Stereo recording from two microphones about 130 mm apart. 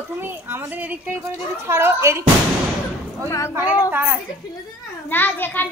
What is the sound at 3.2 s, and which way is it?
Speech, 20° left (ahead or behind).